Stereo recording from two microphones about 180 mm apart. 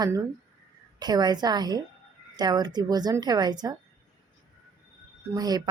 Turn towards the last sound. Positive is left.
turn(degrees=-20)  # may be behind; listen again after turning